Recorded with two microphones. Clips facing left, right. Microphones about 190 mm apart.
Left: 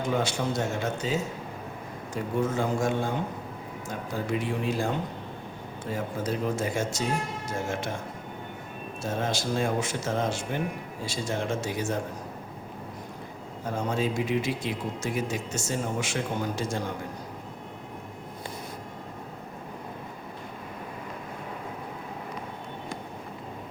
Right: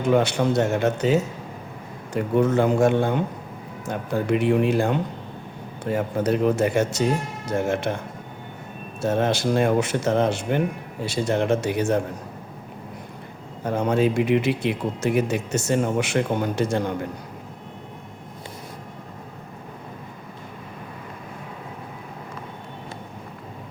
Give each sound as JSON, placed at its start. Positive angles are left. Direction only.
{"t": 0.2, "sound": "speech", "side_deg": -65}
{"t": 9.0, "sound": "speech", "side_deg": -65}
{"t": 13.7, "sound": "speech", "side_deg": -65}